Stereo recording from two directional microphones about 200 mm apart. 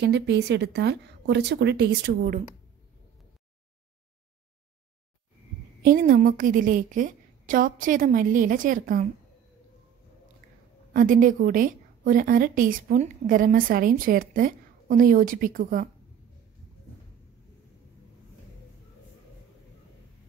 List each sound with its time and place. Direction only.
0.0 s a woman's voice: 60° right (ahead or behind)
5.9 s a woman's voice: 45° right (ahead or behind)
10.9 s a woman's voice: 45° right (ahead or behind)